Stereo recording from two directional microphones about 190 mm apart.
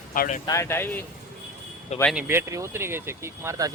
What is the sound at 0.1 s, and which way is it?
Speech, 45° left (ahead or behind).